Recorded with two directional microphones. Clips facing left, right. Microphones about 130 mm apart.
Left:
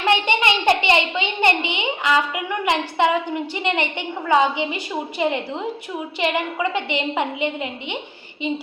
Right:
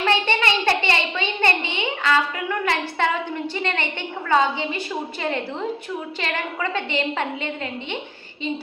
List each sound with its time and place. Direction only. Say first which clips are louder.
0.0 s a woman's voice: left 2 dB; 15° left (ahead or behind)